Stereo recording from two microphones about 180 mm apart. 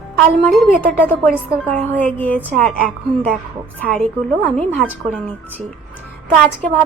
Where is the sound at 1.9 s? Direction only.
10° left (ahead or behind).